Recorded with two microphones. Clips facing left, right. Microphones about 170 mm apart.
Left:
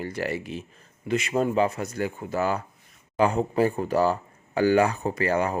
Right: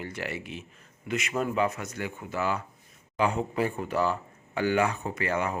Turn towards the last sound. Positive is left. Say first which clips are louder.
# left 5 dB
turn(degrees=35)  # may be behind; listen again after turning